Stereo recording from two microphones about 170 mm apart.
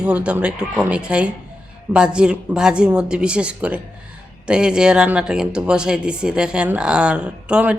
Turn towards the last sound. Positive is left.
turn(degrees=-5)  # may be behind; listen again after turning